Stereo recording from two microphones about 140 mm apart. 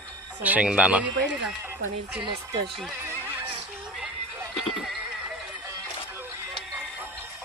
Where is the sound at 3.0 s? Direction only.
15° right (ahead or behind).